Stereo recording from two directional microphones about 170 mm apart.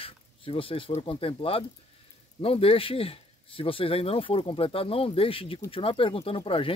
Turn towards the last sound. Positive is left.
turn(degrees=30)  # may be behind; listen again after turning